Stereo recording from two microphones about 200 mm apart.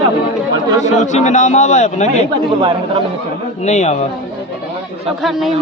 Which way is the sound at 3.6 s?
35° left (ahead or behind).